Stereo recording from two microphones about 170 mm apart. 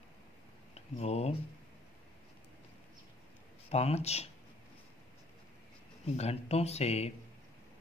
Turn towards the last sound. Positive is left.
turn(degrees=40)  # may be behind; listen again after turning